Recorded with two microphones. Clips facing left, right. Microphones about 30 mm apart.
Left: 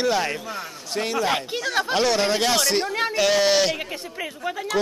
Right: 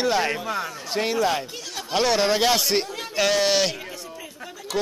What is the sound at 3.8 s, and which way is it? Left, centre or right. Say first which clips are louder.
Speech: left 5 dB; left.